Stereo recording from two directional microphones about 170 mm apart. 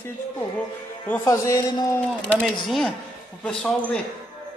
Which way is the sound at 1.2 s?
20° left (ahead or behind).